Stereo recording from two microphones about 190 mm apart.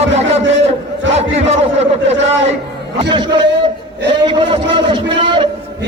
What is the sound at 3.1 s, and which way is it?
A man's voice, 25° right (ahead or behind).